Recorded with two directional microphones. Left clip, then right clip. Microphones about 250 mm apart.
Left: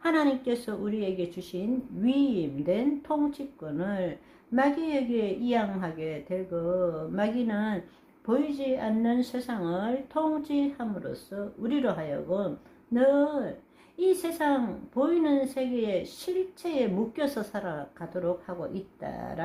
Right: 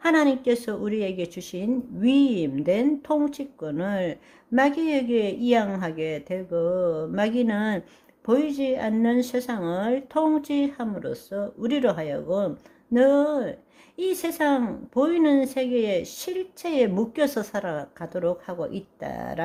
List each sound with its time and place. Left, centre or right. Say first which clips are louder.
0.0 s a woman's voice: right 5 dB; right